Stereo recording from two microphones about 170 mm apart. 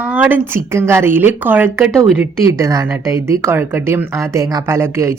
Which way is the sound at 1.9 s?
5° left (ahead or behind).